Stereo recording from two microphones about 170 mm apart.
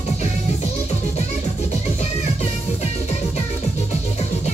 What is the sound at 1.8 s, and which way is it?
Music, 40° left (ahead or behind).